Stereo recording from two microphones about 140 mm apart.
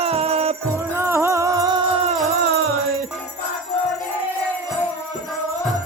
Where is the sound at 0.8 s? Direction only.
20° right (ahead or behind).